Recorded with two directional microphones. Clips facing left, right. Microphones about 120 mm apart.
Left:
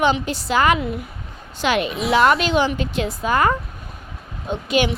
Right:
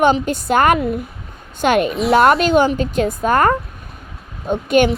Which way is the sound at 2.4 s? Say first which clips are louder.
Right 5 dB; 50° right (ahead or behind).